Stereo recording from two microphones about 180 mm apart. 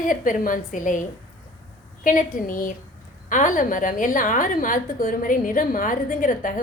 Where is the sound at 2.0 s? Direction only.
50° left (ahead or behind).